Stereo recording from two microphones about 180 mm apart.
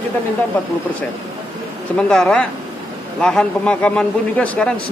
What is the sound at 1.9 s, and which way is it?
A man's voice, 5° left (ahead or behind).